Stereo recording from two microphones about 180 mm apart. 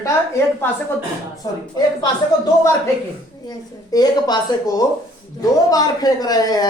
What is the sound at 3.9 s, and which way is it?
Speech, 20° left (ahead or behind).